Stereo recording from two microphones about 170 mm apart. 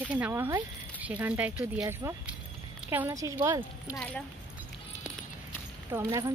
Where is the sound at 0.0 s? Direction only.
10° right (ahead or behind).